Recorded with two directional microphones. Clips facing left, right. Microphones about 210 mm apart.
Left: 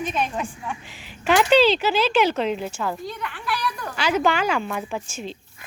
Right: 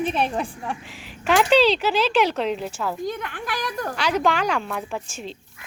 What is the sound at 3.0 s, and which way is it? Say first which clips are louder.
Speech: right 3 dB; 50° right (ahead or behind).